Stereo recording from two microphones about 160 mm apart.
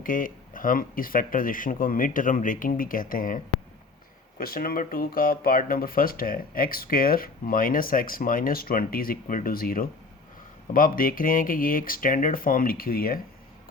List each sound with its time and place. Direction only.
0.0 s speech: 60° left (ahead or behind)